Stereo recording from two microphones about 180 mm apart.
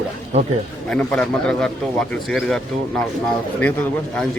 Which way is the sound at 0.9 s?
5° left (ahead or behind).